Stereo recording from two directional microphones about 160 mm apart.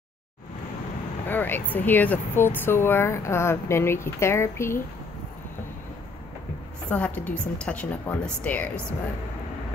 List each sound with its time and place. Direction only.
1.2 s speech: 10° left (ahead or behind)
6.9 s speech: 10° left (ahead or behind)